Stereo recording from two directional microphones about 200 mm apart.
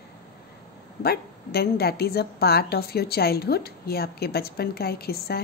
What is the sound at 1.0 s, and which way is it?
Speech, 50° left (ahead or behind).